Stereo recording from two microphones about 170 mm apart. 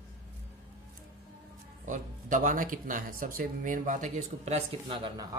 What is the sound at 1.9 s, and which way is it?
Speech, 50° right (ahead or behind).